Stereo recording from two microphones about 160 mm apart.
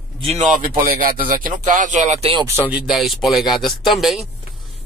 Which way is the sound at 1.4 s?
55° right (ahead or behind).